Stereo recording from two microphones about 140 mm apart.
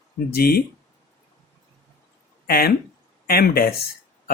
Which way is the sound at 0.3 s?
90° left.